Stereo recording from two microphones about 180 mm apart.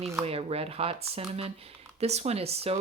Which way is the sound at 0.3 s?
35° right (ahead or behind).